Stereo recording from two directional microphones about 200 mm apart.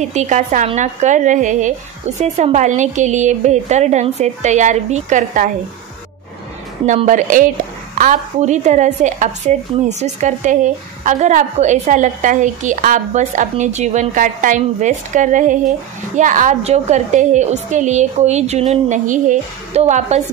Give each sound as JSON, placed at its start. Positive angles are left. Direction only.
{"t": 0.0, "sound": "speech", "side_deg": -35}
{"t": 6.9, "sound": "speech", "side_deg": -35}